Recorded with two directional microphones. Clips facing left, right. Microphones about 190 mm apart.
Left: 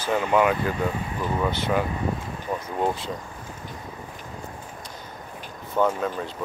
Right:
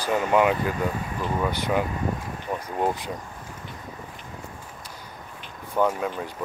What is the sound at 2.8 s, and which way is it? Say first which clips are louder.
Speech: even; 15° right (ahead or behind).